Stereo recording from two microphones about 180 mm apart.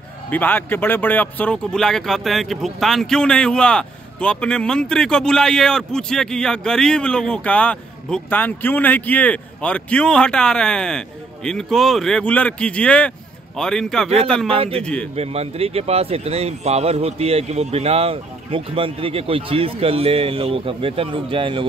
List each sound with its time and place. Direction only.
0.3 s speech: 10° left (ahead or behind)
14.0 s speech: 35° right (ahead or behind)
14.8 s speech: 5° left (ahead or behind)
15.1 s speech: 35° right (ahead or behind)